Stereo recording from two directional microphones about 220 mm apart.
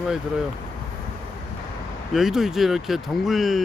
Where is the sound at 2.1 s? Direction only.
Centre (ahead or behind).